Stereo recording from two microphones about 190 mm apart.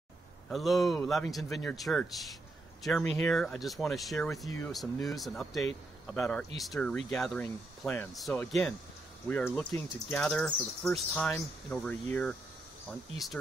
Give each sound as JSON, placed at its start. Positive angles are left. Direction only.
{"t": 0.5, "sound": "speech", "side_deg": 0}